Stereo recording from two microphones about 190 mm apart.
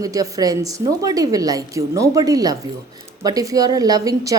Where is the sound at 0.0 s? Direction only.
20° right (ahead or behind).